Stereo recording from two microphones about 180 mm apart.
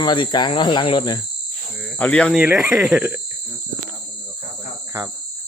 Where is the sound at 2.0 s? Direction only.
5° left (ahead or behind).